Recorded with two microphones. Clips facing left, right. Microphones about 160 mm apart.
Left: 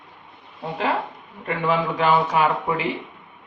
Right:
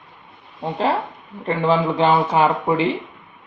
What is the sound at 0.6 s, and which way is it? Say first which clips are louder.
Speech: right 3 dB; 30° right (ahead or behind).